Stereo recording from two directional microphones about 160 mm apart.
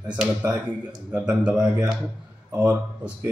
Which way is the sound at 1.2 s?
5° right (ahead or behind).